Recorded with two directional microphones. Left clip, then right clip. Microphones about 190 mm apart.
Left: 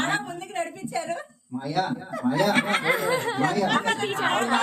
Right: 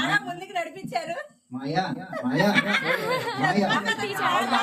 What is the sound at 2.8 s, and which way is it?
Speech, 30° left (ahead or behind).